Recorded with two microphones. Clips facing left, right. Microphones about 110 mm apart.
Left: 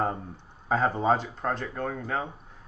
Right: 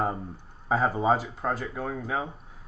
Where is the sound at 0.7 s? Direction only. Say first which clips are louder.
Even; 5° right (ahead or behind).